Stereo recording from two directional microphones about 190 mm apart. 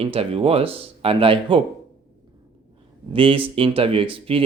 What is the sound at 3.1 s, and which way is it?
Speech, 30° right (ahead or behind).